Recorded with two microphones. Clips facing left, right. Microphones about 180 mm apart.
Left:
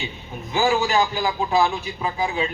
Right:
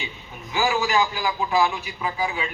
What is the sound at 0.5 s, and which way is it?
A man's voice, 25° left (ahead or behind).